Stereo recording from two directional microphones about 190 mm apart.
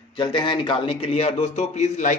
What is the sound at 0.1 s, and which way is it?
A man's voice, 25° left (ahead or behind).